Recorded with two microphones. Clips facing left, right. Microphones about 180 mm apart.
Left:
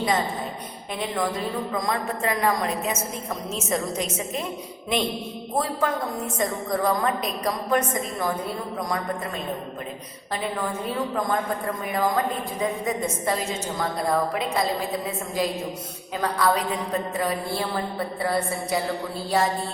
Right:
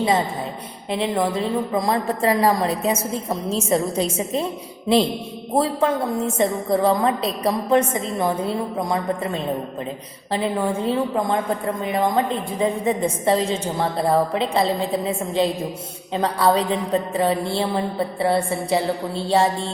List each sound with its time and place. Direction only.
0.9 s a woman's voice: 25° right (ahead or behind)
5.5 s a woman's voice: 25° right (ahead or behind)